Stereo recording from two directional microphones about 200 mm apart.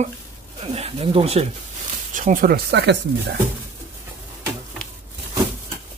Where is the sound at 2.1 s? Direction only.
40° right (ahead or behind); by 3.3 s 55° right (ahead or behind).